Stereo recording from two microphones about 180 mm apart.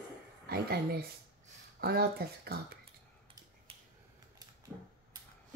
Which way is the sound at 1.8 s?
60° right (ahead or behind).